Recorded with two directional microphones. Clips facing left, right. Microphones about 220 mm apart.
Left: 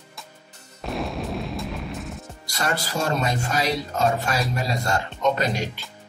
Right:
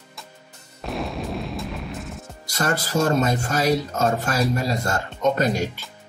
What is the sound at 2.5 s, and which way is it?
Speech, 45° right (ahead or behind).